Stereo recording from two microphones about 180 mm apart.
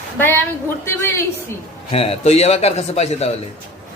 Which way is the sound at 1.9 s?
35° left (ahead or behind).